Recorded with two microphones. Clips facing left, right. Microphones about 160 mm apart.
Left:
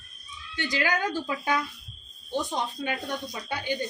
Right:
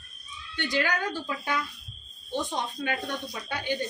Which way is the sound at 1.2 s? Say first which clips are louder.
Left 3 dB; 15° left (ahead or behind).